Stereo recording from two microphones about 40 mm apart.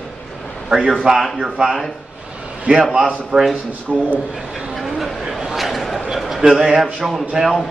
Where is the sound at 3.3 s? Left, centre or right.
Centre.